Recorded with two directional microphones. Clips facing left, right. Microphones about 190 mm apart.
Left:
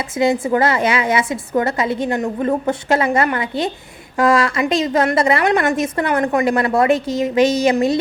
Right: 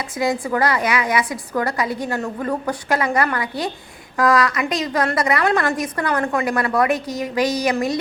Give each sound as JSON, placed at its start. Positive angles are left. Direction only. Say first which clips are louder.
{"t": 0.2, "sound": "a woman's voice", "louder": "left 4 dB", "side_deg": 25}